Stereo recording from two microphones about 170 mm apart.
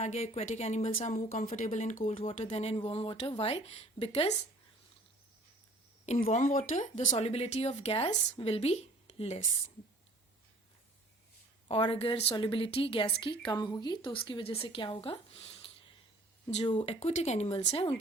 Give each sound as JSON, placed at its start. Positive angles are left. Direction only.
{"t": 0.0, "sound": "a woman's voice", "side_deg": 40}
{"t": 1.1, "sound": "a woman's voice", "side_deg": 45}
{"t": 6.2, "sound": "a woman's voice", "side_deg": 45}
{"t": 11.7, "sound": "a woman's voice", "side_deg": 35}
{"t": 16.7, "sound": "a woman's voice", "side_deg": 40}